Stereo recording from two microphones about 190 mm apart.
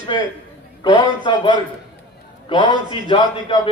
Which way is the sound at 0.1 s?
25° left (ahead or behind).